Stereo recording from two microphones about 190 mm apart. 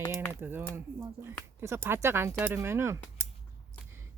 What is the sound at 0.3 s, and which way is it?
Speech, 10° right (ahead or behind).